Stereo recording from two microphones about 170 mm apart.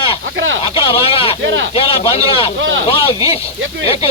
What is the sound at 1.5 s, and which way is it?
Speech, 90° right.